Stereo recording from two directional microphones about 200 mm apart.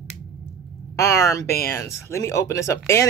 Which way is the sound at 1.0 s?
15° left (ahead or behind).